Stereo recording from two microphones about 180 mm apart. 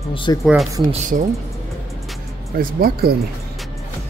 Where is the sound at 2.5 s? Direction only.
55° right (ahead or behind).